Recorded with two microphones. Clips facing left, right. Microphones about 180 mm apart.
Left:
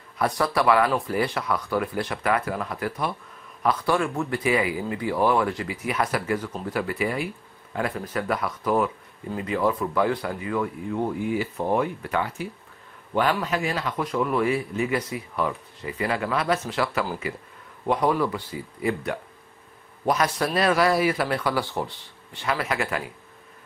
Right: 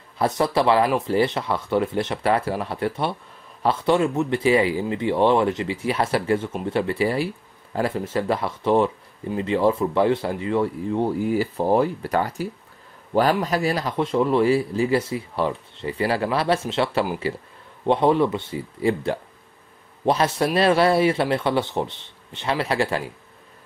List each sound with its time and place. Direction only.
0.2 s a man's voice: 25° right (ahead or behind)